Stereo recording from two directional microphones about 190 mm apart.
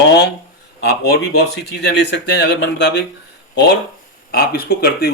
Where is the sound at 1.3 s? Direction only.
60° left (ahead or behind).